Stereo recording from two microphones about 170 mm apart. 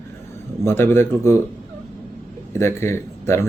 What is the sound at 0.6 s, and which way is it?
Speech, 15° left (ahead or behind).